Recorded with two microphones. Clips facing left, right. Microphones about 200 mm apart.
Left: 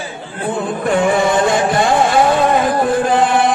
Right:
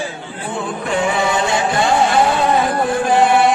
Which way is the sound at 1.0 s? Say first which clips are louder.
Left 4 dB; 50° left (ahead or behind).